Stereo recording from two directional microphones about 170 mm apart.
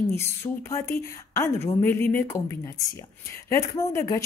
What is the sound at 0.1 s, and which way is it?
A woman's voice, 15° left (ahead or behind).